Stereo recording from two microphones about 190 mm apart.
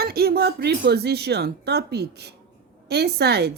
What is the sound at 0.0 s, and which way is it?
Speech, 55° right (ahead or behind).